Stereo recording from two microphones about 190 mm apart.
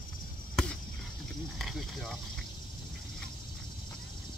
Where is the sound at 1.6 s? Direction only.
Centre (ahead or behind).